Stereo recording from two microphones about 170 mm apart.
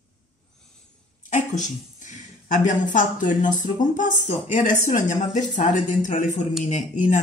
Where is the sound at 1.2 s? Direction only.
50° left (ahead or behind).